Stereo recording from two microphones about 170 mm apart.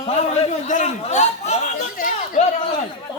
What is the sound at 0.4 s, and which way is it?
A man's voice, 40° left (ahead or behind).